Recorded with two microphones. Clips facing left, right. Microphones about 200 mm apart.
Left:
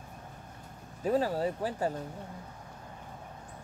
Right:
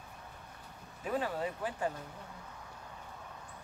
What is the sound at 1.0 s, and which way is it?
Speech, 35° left (ahead or behind).